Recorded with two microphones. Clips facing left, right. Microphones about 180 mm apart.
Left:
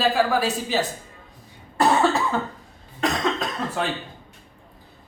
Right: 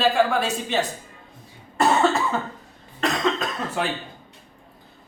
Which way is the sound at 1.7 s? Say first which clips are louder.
Even; centre (ahead or behind).